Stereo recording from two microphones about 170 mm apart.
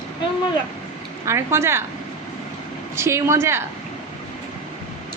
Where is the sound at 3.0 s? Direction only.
15° right (ahead or behind).